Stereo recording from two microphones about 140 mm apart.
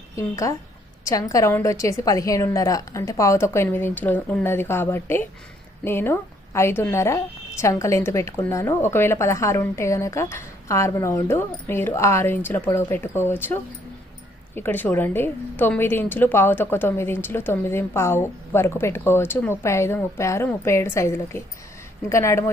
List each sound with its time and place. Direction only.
0.2 s a woman's voice: 20° left (ahead or behind)